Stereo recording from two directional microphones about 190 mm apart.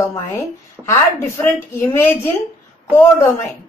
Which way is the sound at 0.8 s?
10° right (ahead or behind).